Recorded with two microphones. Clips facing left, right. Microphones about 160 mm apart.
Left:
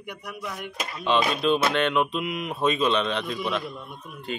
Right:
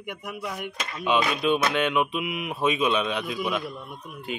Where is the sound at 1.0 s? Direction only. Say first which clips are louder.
Left 1 dB; centre (ahead or behind).